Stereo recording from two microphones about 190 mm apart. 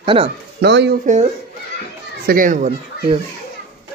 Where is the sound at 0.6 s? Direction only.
60° right (ahead or behind).